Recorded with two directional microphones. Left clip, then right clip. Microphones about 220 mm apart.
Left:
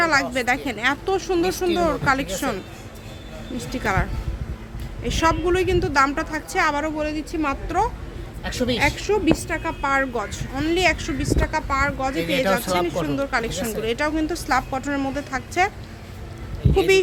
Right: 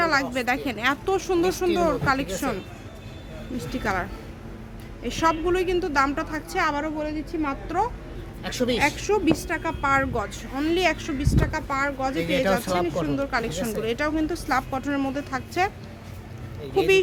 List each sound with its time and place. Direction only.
0.0 s a sound: 5° left (ahead or behind)
0.3 s a woman's voice: centre (ahead or behind)
1.9 s a woman's voice: 5° left (ahead or behind)
3.6 s a woman's voice: 10° left (ahead or behind)
8.4 s a woman's voice: 20° right (ahead or behind)
9.0 s a woman's voice: centre (ahead or behind)
12.1 s speech: 10° right (ahead or behind)
12.6 s a woman's voice: 10° left (ahead or behind)